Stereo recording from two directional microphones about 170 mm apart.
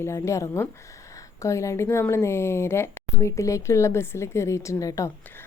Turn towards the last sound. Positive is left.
turn(degrees=20)  # may be behind; listen again after turning